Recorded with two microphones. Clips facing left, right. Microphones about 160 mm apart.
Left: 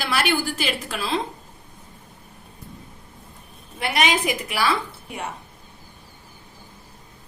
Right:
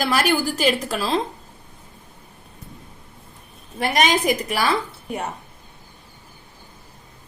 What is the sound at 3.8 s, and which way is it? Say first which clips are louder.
Speech: right 3 dB; 40° right (ahead or behind).